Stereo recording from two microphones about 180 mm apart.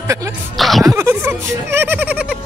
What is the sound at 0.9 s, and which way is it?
Speech, 15° right (ahead or behind).